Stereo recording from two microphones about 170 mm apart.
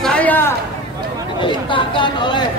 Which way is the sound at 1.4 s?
30° left (ahead or behind).